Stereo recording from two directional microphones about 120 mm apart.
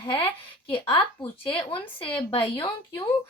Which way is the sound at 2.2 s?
45° left (ahead or behind).